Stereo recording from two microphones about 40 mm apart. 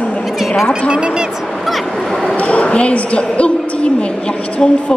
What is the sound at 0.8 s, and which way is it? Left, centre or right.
Speech, right.